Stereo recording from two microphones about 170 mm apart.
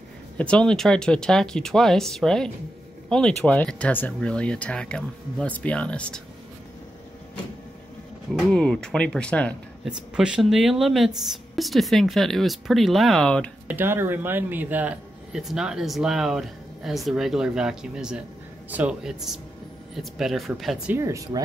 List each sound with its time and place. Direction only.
0.4 s speech: 5° left (ahead or behind)
8.4 s speech: 5° left (ahead or behind)
9.8 s speech: 5° right (ahead or behind)
13.7 s speech: 10° right (ahead or behind)
20.9 s speech: 20° right (ahead or behind)